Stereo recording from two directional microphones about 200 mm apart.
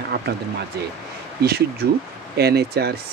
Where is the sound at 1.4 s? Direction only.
50° right (ahead or behind).